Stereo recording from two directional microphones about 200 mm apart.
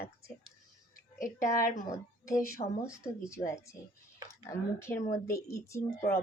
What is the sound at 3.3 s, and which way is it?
Speech, 15° left (ahead or behind).